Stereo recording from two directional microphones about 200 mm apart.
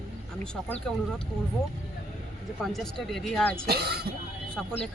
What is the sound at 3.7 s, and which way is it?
Speech, 50° right (ahead or behind).